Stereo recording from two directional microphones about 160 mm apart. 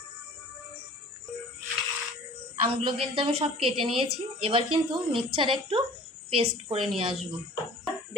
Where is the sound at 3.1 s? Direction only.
35° right (ahead or behind).